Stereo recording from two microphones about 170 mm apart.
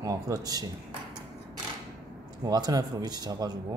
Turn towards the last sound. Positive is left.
turn(degrees=-25)  # may be behind; listen again after turning